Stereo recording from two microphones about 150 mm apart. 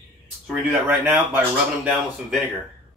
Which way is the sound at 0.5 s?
10° right (ahead or behind).